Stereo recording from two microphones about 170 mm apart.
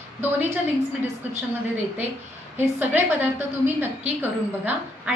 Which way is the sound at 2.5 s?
10° right (ahead or behind).